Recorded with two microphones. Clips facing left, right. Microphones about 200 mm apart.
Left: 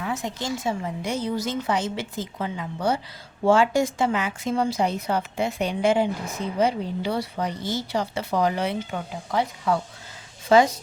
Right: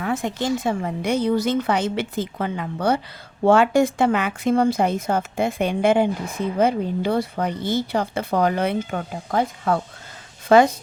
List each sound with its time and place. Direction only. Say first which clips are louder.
0.0 s a woman's voice: right 5 dB; 60° right (ahead or behind)